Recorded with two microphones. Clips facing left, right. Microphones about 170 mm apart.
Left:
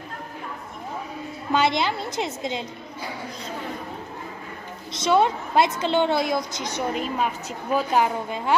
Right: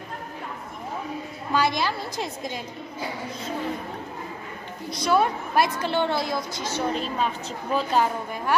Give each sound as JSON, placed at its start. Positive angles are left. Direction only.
{"t": 1.5, "sound": "a woman's voice", "side_deg": 20}
{"t": 4.9, "sound": "a woman's voice", "side_deg": 25}